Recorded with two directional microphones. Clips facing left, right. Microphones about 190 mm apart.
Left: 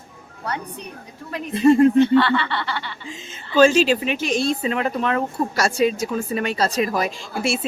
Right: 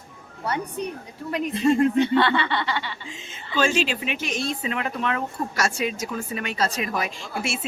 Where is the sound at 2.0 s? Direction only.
20° right (ahead or behind).